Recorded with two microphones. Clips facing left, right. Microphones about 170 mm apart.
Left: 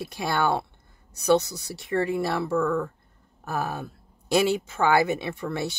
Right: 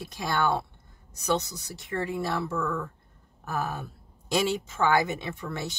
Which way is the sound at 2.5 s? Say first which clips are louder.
Left 6 dB; 30° left (ahead or behind).